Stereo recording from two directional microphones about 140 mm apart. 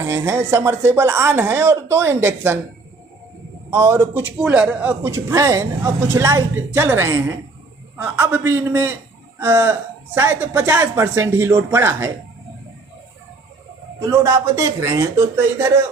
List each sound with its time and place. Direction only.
0.0 s a man's voice: 20° right (ahead or behind)
3.7 s a man's voice: 20° right (ahead or behind)
14.0 s a man's voice: 20° right (ahead or behind)